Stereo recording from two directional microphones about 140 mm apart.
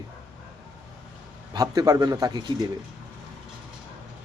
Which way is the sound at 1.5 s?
25° right (ahead or behind).